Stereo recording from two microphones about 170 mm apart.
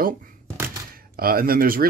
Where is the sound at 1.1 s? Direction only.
60° right (ahead or behind).